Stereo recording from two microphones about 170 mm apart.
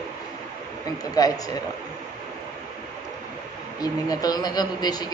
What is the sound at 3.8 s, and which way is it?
A man's voice, 20° left (ahead or behind).